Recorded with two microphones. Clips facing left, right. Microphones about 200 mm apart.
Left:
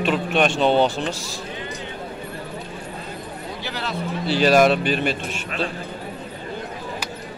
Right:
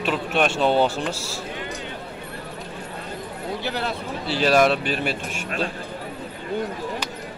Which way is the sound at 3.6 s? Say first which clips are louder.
Right 4 dB; 55° right (ahead or behind).